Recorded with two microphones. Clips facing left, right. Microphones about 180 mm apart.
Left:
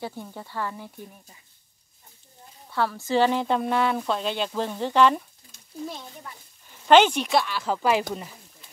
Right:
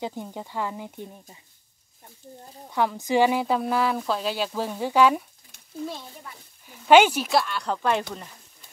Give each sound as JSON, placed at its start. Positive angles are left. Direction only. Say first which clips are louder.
{"t": 0.0, "sound": "speech", "louder": "right 3 dB", "side_deg": -15}
{"t": 2.7, "sound": "speech", "louder": "right 1 dB", "side_deg": -15}
{"t": 6.9, "sound": "speech", "louder": "right 1 dB", "side_deg": -10}